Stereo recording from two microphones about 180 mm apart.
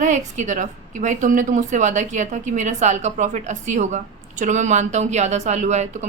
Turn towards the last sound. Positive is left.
turn(degrees=-40)  # may be behind; listen again after turning